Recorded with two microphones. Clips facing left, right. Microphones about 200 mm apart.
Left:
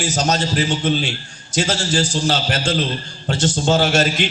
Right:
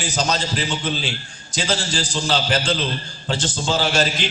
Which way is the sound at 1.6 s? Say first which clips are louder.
Left 4 dB; 45° left (ahead or behind).